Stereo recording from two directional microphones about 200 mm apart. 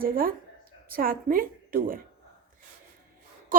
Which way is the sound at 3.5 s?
45° right (ahead or behind).